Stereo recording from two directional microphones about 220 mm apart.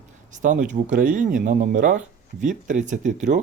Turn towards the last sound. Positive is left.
turn(degrees=-35)  # may be behind; listen again after turning